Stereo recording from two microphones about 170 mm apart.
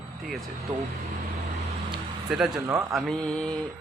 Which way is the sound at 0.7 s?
35° right (ahead or behind).